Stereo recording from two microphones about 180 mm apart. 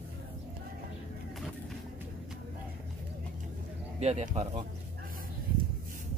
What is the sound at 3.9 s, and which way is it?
Speech, 40° right (ahead or behind).